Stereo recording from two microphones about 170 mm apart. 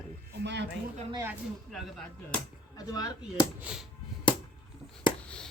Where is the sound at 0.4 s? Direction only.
90° right.